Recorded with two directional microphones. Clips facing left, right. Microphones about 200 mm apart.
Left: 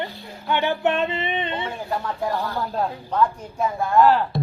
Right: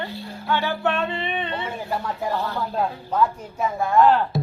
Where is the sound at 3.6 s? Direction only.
Centre (ahead or behind).